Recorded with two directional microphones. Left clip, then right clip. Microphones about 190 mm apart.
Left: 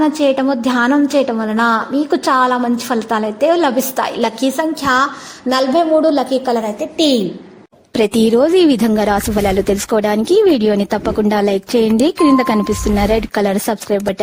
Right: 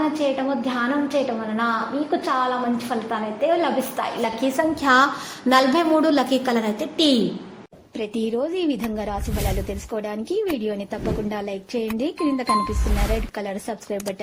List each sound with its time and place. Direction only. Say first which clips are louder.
0.0 s a woman's voice: left 8 dB; 55° left (ahead or behind)
4.8 s a woman's voice: left 1 dB; 15° left (ahead or behind)
7.9 s a woman's voice: left 13 dB; 70° left (ahead or behind)